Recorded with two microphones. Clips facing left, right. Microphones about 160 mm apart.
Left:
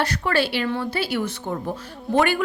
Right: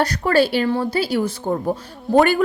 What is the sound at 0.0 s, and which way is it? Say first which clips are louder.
A woman's voice: right 5 dB; 40° right (ahead or behind).